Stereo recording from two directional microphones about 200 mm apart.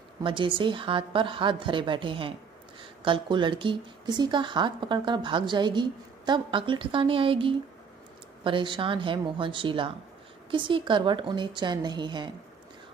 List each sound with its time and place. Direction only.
0.2 s a woman's voice: 25° right (ahead or behind)